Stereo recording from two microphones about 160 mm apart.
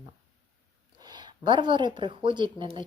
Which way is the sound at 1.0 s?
25° right (ahead or behind).